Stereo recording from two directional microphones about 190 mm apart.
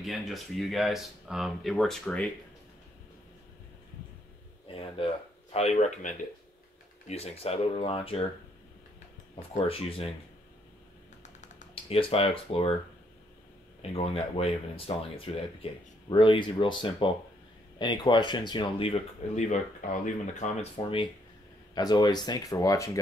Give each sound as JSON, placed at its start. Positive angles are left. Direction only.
{"t": 0.0, "sound": "speech", "side_deg": 0}
{"t": 5.5, "sound": "speech", "side_deg": 35}
{"t": 9.7, "sound": "speech", "side_deg": 30}
{"t": 11.2, "sound": "typing", "side_deg": 35}
{"t": 13.9, "sound": "speech", "side_deg": 30}
{"t": 20.7, "sound": "speech", "side_deg": 25}